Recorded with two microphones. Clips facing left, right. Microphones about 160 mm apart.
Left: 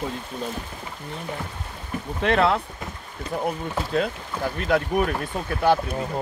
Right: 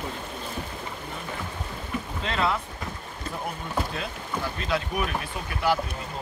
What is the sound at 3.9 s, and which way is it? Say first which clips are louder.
Speech: left 7 dB; 55° left (ahead or behind).